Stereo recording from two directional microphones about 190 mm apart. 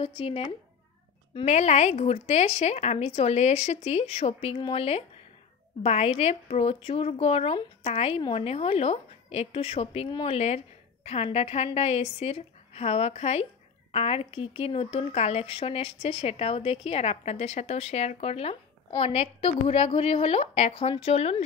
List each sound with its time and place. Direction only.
0.0 s speech: 30° left (ahead or behind)